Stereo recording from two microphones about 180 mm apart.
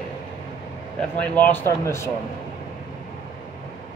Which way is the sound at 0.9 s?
10° left (ahead or behind).